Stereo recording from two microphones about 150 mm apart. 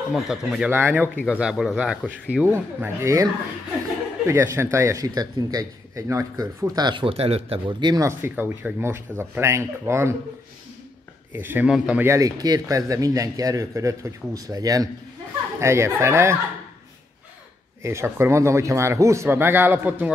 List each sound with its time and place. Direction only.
0.1 s speech: 5° right (ahead or behind)
0.7 s speech: 15° right (ahead or behind)
1.4 s speech: 5° right (ahead or behind); by 3.3 s 20° right (ahead or behind)
4.3 s speech: 20° right (ahead or behind)
6.8 s speech: 30° right (ahead or behind)
11.3 s speech: 15° right (ahead or behind)
12.0 s speech: 20° right (ahead or behind)
17.8 s speech: 15° right (ahead or behind)